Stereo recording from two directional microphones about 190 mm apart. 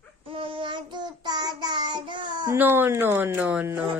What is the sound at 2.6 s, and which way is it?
Speech, 10° right (ahead or behind).